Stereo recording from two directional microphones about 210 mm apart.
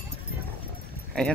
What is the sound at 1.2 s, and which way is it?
Speech, centre (ahead or behind).